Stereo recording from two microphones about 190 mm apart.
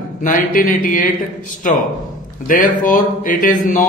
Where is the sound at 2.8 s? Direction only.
45° left (ahead or behind).